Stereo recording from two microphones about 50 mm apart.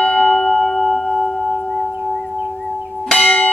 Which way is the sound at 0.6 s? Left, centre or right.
Centre.